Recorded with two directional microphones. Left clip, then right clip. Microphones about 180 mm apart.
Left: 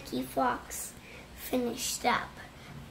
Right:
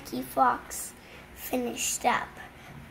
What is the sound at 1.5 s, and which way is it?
Speech, 20° left (ahead or behind).